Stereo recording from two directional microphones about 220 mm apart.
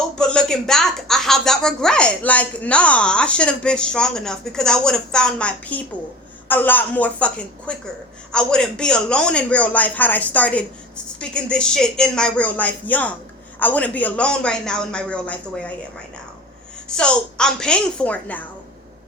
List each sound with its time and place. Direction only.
0.2 s a woman's voice: 5° left (ahead or behind)
16.9 s speech: 5° left (ahead or behind)